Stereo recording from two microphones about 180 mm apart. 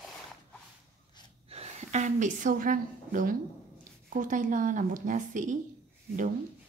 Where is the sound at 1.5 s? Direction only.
35° right (ahead or behind).